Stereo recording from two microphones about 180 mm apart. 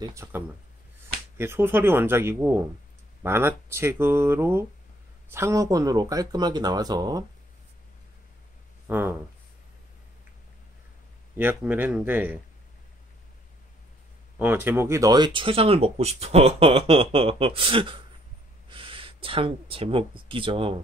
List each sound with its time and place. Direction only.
0.0 s speech: 15° right (ahead or behind)
1.4 s speech: 15° right (ahead or behind)
8.8 s speech: 10° right (ahead or behind)
11.3 s speech: 10° right (ahead or behind)
14.4 s speech: 10° right (ahead or behind); by 20.8 s 30° right (ahead or behind)